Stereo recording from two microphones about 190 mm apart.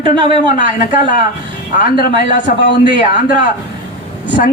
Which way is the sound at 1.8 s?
50° left (ahead or behind).